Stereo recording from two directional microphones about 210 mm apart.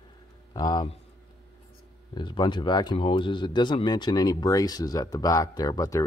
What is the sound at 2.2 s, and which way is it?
Speech, 20° left (ahead or behind).